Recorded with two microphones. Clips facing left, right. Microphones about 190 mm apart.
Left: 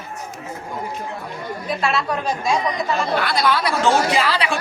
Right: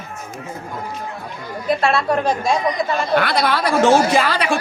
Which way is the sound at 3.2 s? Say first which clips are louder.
Right 2 dB; 50° right (ahead or behind).